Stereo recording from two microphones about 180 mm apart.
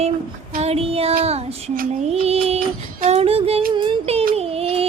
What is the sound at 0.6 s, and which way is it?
Child singing, 35° right (ahead or behind).